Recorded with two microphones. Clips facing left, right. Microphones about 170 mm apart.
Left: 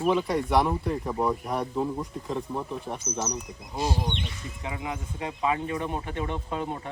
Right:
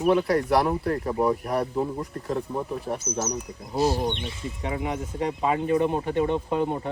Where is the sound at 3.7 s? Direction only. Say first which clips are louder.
Right 6 dB; 30° right (ahead or behind).